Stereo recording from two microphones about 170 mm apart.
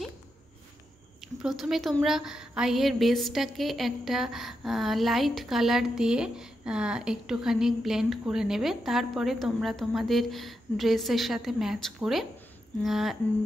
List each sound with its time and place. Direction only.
1.4 s a woman's voice: centre (ahead or behind)